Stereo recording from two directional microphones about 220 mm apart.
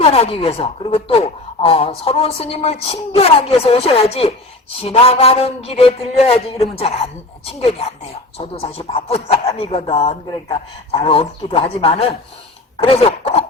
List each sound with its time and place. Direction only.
0.0 s speech: 25° left (ahead or behind)